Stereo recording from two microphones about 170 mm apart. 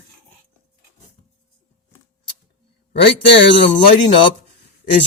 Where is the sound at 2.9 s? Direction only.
90° left.